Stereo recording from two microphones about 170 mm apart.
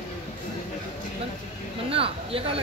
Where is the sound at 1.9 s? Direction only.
35° right (ahead or behind).